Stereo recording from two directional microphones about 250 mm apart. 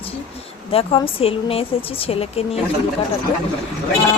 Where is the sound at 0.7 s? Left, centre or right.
Left.